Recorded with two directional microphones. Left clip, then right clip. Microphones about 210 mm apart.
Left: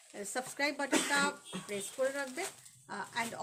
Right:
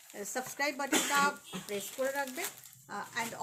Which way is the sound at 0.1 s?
20° left (ahead or behind).